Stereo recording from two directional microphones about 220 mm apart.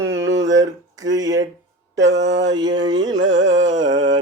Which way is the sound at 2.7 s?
20° right (ahead or behind).